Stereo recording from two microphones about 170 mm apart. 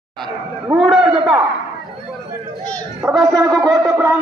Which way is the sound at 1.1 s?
30° right (ahead or behind).